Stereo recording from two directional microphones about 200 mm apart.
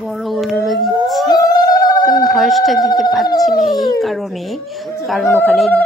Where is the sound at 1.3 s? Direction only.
20° left (ahead or behind).